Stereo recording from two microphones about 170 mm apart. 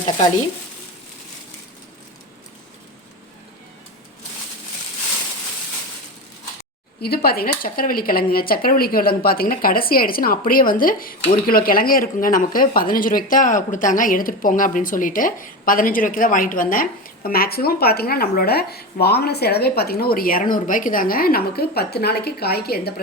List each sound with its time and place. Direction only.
7.0 s speech: 65° left (ahead or behind)